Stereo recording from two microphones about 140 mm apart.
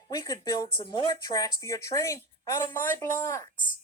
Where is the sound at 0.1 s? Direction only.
25° left (ahead or behind).